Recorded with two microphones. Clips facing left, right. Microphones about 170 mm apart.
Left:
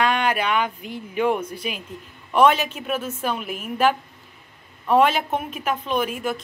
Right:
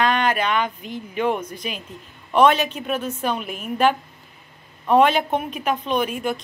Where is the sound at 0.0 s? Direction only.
10° left (ahead or behind).